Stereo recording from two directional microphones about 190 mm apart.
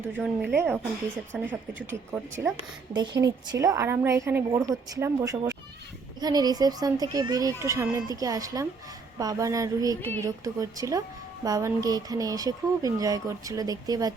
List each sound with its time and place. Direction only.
0.0 s a woman's voice: 10° right (ahead or behind)
2.9 s a woman's voice: 25° right (ahead or behind)